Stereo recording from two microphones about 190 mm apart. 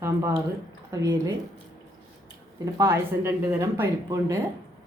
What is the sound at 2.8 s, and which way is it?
Speech, 15° right (ahead or behind).